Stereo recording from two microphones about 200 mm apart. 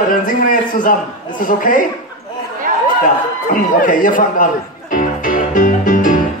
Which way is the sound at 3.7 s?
45° left (ahead or behind).